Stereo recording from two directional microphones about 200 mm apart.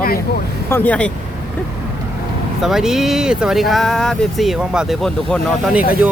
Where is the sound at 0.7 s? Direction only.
10° left (ahead or behind).